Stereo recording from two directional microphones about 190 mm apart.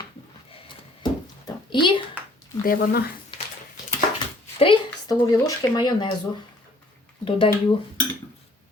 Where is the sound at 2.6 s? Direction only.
50° left (ahead or behind).